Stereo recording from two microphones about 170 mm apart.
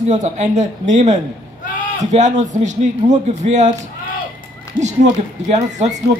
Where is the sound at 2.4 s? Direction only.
45° right (ahead or behind).